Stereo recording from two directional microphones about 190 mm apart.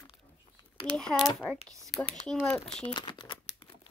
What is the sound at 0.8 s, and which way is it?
Speech, 5° left (ahead or behind).